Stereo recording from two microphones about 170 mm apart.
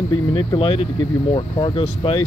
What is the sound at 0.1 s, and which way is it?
Speech, 25° left (ahead or behind).